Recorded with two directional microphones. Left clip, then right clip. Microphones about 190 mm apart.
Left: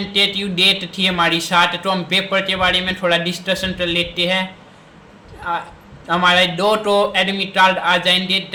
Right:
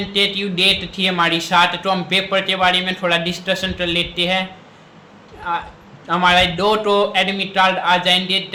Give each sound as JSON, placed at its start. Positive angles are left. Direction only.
{"t": 0.1, "sound": "a man's voice", "side_deg": 5}
{"t": 5.5, "sound": "a man's voice", "side_deg": 5}